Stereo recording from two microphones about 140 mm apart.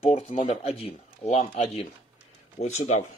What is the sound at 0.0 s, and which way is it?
Speech, 50° left (ahead or behind).